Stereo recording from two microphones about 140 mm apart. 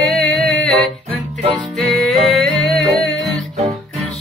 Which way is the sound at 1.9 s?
Centre (ahead or behind).